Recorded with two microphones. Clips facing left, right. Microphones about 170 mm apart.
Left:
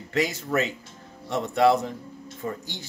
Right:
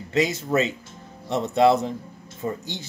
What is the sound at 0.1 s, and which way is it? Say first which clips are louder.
Speech: right 3 dB; 20° right (ahead or behind).